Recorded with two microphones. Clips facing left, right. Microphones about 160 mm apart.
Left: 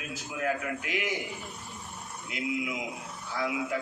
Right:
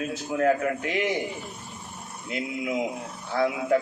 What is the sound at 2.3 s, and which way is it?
Speech, 35° right (ahead or behind).